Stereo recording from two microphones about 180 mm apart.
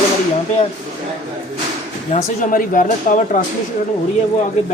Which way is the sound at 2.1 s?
50° left (ahead or behind).